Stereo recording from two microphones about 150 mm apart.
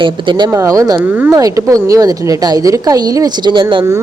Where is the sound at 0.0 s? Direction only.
30° right (ahead or behind).